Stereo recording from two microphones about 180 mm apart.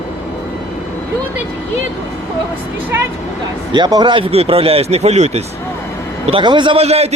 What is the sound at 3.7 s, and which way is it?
Speech, 25° right (ahead or behind).